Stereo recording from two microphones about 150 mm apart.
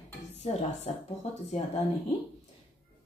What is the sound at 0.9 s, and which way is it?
Speech, 45° left (ahead or behind).